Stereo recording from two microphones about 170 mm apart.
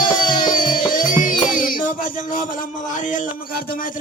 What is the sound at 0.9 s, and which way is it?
Music, 50° left (ahead or behind).